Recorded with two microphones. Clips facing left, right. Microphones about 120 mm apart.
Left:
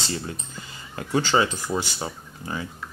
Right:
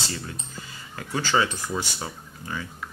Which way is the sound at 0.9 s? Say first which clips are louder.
Left 3 dB; 25° left (ahead or behind).